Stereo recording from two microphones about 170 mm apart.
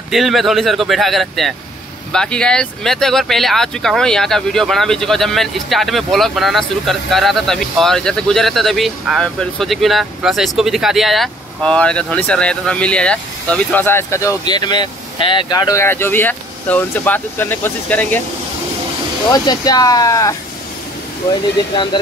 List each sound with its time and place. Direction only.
0.1 s speech: centre (ahead or behind)
19.2 s speech: 25° left (ahead or behind)
21.9 s speech: 25° left (ahead or behind)